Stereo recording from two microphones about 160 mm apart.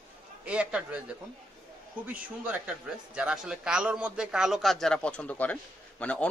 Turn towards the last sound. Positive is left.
turn(degrees=10)  # may be behind; listen again after turning